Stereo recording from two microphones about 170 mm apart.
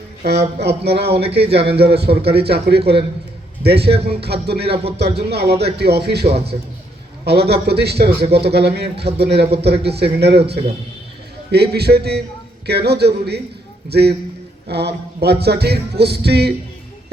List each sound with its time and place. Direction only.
0.3 s music: 80° right
4.7 s speech: 35° right (ahead or behind)
4.9 s music: 75° right (ahead or behind)
11.5 s music: 70° right (ahead or behind)